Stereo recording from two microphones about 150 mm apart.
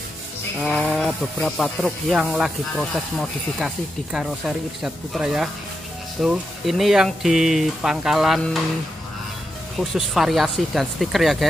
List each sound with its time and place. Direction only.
0.7 s speech: 5° left (ahead or behind)
9.8 s speech: centre (ahead or behind)